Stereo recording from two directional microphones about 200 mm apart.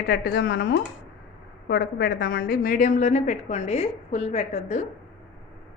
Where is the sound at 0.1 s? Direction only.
55° left (ahead or behind); by 4.8 s 35° left (ahead or behind).